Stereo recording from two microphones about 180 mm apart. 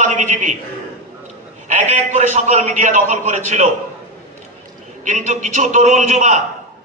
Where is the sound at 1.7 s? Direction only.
40° right (ahead or behind).